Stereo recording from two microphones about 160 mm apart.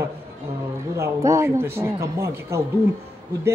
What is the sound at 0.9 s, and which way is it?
Speech, 15° right (ahead or behind).